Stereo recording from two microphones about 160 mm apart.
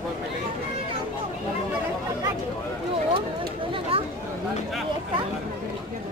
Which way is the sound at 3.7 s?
35° right (ahead or behind).